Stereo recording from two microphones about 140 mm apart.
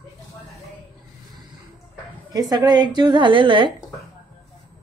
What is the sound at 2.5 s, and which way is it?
A woman's voice, 30° right (ahead or behind).